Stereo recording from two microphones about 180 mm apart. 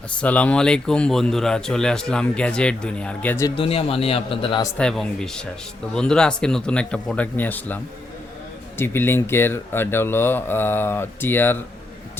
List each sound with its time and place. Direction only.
0.2 s speech: 10° left (ahead or behind)
3.5 s a man's voice: 30° left (ahead or behind)
4.8 s speech: 5° left (ahead or behind)
8.8 s speech: 10° left (ahead or behind)